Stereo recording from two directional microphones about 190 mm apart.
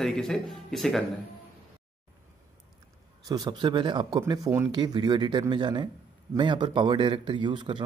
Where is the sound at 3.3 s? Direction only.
20° right (ahead or behind).